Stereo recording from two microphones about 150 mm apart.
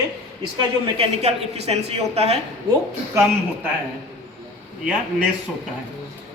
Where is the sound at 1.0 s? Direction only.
45° right (ahead or behind).